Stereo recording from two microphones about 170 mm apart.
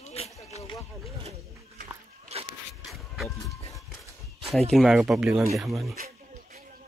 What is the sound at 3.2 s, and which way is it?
Run, 15° left (ahead or behind).